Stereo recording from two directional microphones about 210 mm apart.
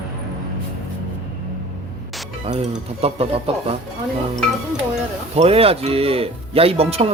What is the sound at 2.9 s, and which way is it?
Speech, 30° right (ahead or behind).